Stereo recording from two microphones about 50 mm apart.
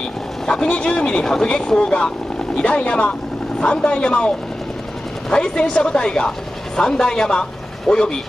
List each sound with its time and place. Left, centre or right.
0.5 s a woman's voice: centre
5.3 s a woman's voice: centre